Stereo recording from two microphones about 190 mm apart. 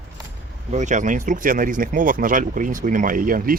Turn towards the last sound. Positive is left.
turn(degrees=-50)  # may be behind; listen again after turning